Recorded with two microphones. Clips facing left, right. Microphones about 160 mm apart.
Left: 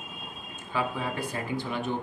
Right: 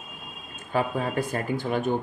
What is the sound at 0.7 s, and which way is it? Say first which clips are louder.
Speech: right 4 dB; 50° right (ahead or behind).